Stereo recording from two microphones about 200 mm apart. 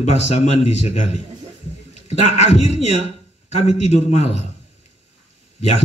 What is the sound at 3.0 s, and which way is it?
A man's voice, 35° left (ahead or behind).